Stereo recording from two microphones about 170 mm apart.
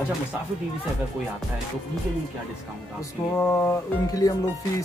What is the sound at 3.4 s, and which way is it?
Speech, 15° left (ahead or behind).